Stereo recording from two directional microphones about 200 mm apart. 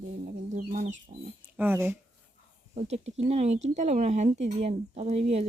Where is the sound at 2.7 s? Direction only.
30° right (ahead or behind).